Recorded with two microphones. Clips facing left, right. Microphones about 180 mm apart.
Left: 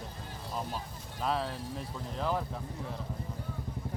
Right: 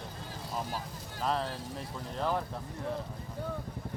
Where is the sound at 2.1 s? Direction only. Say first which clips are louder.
Right 1 dB; centre (ahead or behind).